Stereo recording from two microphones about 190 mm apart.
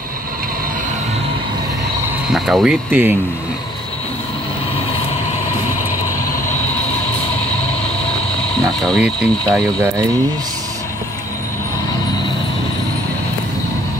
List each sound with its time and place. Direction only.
2.2 s speech: centre (ahead or behind)
8.5 s speech: 5° left (ahead or behind)